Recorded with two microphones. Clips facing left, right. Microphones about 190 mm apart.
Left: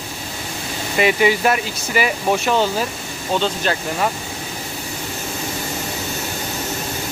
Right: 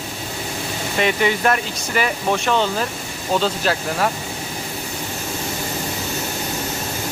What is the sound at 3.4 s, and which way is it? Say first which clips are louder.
Speech: even; centre (ahead or behind).